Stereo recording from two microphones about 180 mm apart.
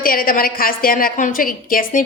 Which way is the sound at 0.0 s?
50° left (ahead or behind).